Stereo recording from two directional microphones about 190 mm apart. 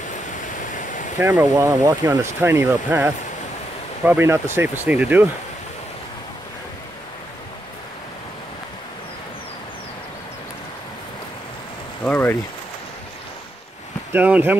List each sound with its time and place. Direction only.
0.4 s waterfall: 45° left (ahead or behind)
1.1 s speech: 15° right (ahead or behind)
12.0 s a sound: 10° left (ahead or behind)
14.1 s speech: 10° right (ahead or behind)